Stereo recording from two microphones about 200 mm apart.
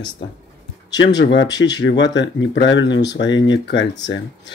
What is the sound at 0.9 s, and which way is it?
Speech, 60° left (ahead or behind).